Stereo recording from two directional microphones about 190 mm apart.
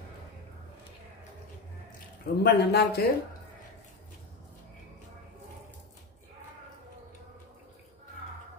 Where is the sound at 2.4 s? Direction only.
60° left (ahead or behind).